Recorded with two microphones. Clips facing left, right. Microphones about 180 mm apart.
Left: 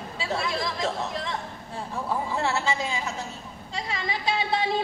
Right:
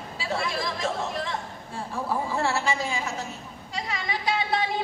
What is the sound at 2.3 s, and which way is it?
Speech, 20° left (ahead or behind).